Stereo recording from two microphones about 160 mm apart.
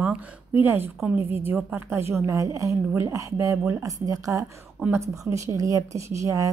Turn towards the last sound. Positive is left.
turn(degrees=-20)  # may be behind; listen again after turning